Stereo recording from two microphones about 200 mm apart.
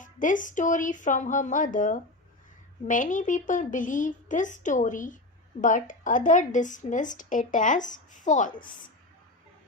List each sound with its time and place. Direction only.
0.0 s a woman's voice: 40° left (ahead or behind)